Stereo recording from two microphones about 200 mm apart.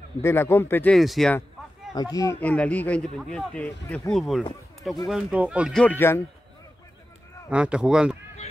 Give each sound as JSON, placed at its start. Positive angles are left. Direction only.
{"t": 0.2, "sound": "speech", "side_deg": 10}
{"t": 2.0, "sound": "speech", "side_deg": 15}
{"t": 7.4, "sound": "speech", "side_deg": -5}